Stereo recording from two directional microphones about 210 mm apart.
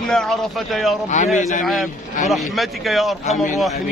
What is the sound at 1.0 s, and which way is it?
Speech, 35° left (ahead or behind).